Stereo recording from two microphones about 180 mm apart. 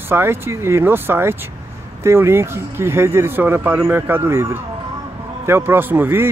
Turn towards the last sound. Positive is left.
turn(degrees=-10)  # may be behind; listen again after turning